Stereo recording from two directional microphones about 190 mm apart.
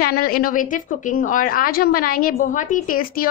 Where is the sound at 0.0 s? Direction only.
50° left (ahead or behind).